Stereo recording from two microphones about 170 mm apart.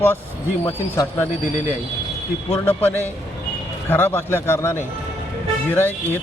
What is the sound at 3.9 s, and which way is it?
Speech, 15° left (ahead or behind).